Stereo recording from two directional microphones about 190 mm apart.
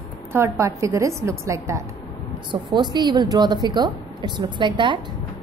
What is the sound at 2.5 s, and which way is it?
A woman's voice, 25° right (ahead or behind).